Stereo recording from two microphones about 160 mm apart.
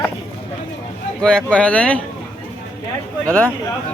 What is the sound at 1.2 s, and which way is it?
Speech, 5° left (ahead or behind).